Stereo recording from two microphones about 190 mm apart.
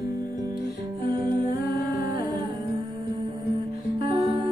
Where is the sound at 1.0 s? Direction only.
50° left (ahead or behind).